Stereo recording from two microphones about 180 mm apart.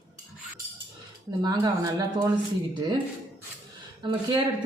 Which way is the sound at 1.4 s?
20° right (ahead or behind).